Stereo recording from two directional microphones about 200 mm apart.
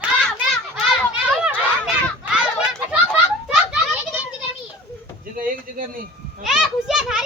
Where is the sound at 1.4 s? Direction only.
5° right (ahead or behind).